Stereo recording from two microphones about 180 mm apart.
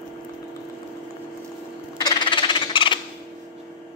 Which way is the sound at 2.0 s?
25° left (ahead or behind).